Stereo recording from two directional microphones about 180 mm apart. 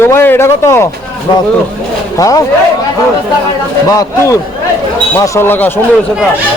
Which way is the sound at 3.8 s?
20° left (ahead or behind).